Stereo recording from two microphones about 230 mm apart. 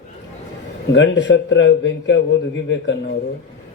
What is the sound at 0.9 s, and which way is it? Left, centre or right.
Speech, left.